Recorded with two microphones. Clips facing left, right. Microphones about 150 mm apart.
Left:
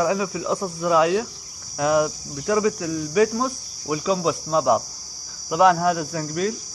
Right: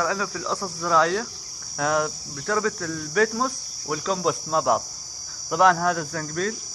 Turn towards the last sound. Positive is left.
turn(degrees=10)  # may be behind; listen again after turning